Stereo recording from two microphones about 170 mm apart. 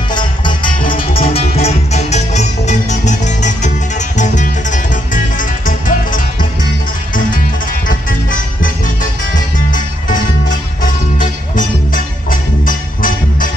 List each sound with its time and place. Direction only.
0.1 s music: 25° left (ahead or behind); by 6.2 s 50° left (ahead or behind)
8.8 s music: 50° left (ahead or behind)
11.5 s music: 55° left (ahead or behind)